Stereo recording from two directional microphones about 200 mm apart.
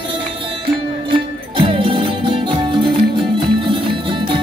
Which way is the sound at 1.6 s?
25° right (ahead or behind).